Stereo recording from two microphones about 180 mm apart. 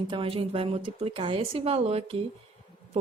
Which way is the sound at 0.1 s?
30° right (ahead or behind).